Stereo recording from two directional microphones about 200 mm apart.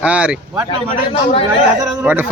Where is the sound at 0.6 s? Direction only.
25° left (ahead or behind).